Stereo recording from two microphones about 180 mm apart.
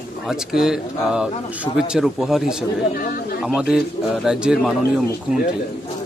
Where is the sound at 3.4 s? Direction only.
5° right (ahead or behind).